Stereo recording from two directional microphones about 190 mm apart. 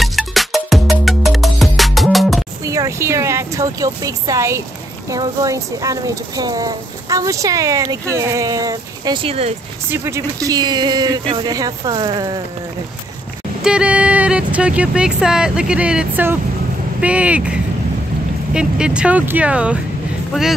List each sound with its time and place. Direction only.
0.0 s music: centre (ahead or behind)
2.6 s speech: 15° right (ahead or behind)
9.8 s speech: 15° right (ahead or behind)
13.7 s speech: 5° right (ahead or behind)